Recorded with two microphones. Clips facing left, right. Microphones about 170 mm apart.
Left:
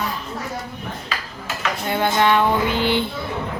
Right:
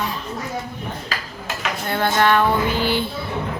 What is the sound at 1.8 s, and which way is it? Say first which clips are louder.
Music: even; 15° left (ahead or behind).